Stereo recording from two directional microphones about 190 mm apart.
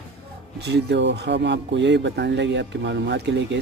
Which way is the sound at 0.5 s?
65° right (ahead or behind).